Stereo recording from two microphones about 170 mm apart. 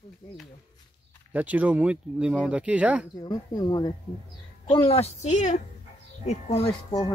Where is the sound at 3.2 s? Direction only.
25° left (ahead or behind).